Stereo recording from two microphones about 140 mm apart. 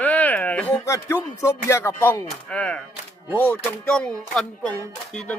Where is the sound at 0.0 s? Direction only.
10° left (ahead or behind).